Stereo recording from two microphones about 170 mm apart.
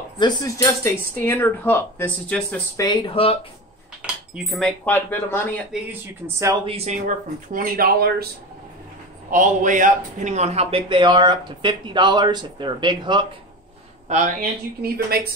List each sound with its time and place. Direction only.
0.2 s speech: 20° left (ahead or behind)
2.8 s speech: 25° left (ahead or behind)
4.0 s speech: 5° right (ahead or behind); by 5.7 s 15° left (ahead or behind)
6.2 s speech: 15° right (ahead or behind)
6.6 s speech: 35° right (ahead or behind)
7.5 s speech: 55° right (ahead or behind)
9.3 s speech: 50° right (ahead or behind); by 13.3 s 30° right (ahead or behind)
14.0 s speech: 45° right (ahead or behind)
14.8 s speech: 65° right (ahead or behind)